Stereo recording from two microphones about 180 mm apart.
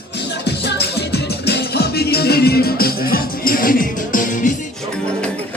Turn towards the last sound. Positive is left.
turn(degrees=50)  # may be behind; listen again after turning